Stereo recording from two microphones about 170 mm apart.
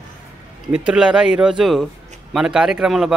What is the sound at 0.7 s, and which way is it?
Speech, 5° right (ahead or behind).